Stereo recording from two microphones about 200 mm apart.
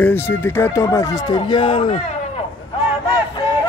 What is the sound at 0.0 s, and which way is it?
Speech, 10° left (ahead or behind).